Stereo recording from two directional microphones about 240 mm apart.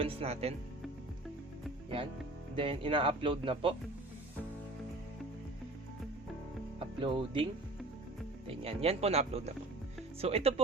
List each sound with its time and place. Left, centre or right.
0.0 s speech: right
2.6 s speech: right
6.7 s music: right
8.4 s speech: right